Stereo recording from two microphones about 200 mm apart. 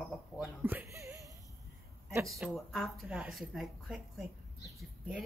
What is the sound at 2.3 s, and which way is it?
Speech, centre (ahead or behind).